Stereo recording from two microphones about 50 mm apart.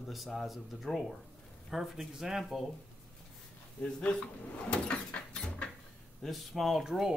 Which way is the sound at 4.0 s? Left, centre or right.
Left.